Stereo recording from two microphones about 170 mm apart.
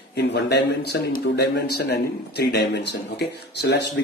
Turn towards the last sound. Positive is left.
turn(degrees=80)